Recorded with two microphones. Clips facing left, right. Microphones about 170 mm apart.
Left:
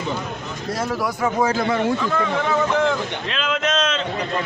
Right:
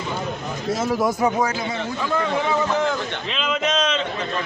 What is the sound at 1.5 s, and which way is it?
Speech, 50° left (ahead or behind).